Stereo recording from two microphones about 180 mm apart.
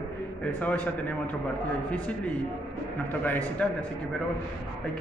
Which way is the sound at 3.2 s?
10° left (ahead or behind).